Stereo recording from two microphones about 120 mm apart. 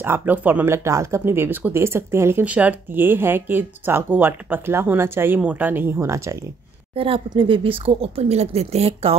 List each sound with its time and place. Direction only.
0.0 s speech: 20° right (ahead or behind)
7.3 s a woman's voice: 50° right (ahead or behind)